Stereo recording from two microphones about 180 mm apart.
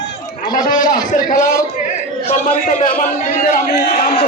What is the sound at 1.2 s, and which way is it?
A man's voice, 45° left (ahead or behind).